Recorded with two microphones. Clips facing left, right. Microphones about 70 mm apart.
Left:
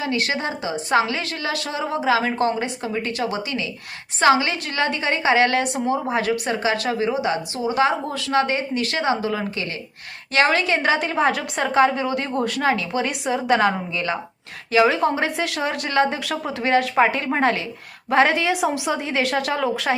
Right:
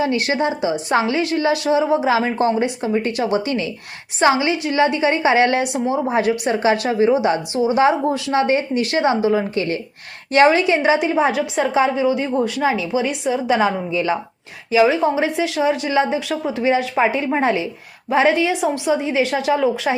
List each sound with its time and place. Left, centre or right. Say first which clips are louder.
0.0 s speech: right 5 dB; right
4.2 s speech: right 1 dB; centre
10.3 s a woman's voice: right 5 dB; right
14.7 s a woman's voice: right 2 dB; centre